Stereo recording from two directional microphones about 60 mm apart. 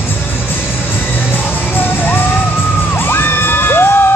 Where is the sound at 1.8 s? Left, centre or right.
Left.